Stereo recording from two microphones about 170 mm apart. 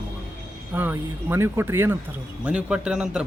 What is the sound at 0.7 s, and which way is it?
A man's voice, 10° right (ahead or behind).